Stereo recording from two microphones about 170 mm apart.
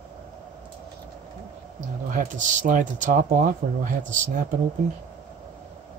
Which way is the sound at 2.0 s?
50° right (ahead or behind).